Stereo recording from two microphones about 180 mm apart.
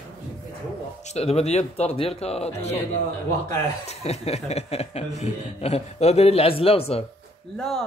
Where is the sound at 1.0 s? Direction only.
35° left (ahead or behind).